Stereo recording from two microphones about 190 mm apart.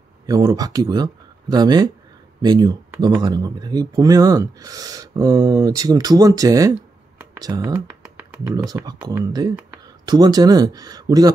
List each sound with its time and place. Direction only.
0.3 s speech: 20° right (ahead or behind)
7.7 s typing: 5° right (ahead or behind)
8.6 s speech: 20° right (ahead or behind)